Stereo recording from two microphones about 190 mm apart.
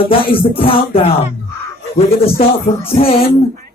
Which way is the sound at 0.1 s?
30° left (ahead or behind).